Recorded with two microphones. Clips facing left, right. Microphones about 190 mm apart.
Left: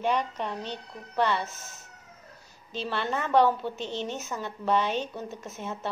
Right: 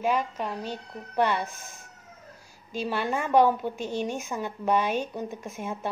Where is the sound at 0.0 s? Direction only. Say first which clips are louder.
Right 1 dB; 5° right (ahead or behind).